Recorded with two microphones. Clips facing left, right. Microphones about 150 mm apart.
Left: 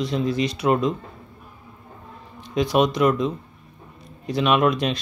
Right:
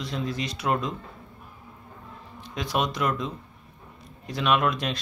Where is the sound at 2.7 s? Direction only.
Centre (ahead or behind).